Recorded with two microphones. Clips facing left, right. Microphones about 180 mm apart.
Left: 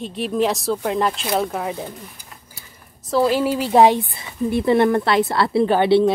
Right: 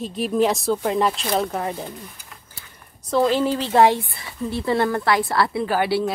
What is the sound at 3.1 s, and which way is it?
Speech, 5° left (ahead or behind).